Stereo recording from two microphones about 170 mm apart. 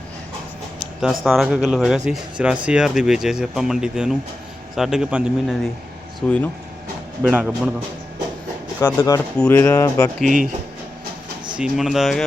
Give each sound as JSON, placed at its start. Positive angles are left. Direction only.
{"t": 1.0, "sound": "speech", "side_deg": 0}
{"t": 6.1, "sound": "speech", "side_deg": 5}
{"t": 7.3, "sound": "speech", "side_deg": -5}
{"t": 8.8, "sound": "speech", "side_deg": 20}
{"t": 10.2, "sound": "speech", "side_deg": -50}
{"t": 11.5, "sound": "speech", "side_deg": -5}